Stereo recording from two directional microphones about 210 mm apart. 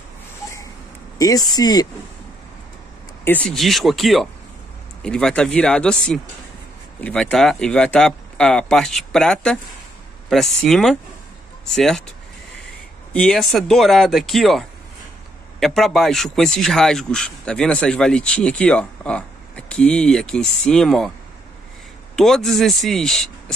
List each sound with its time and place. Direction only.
1.1 s speech: 15° left (ahead or behind)
3.3 s speech: 5° left (ahead or behind)
13.1 s speech: 5° left (ahead or behind)
22.1 s speech: centre (ahead or behind)